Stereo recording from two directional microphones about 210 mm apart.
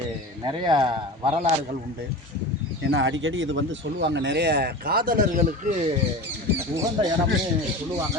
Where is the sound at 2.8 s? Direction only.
60° right (ahead or behind); by 5.5 s 45° right (ahead or behind).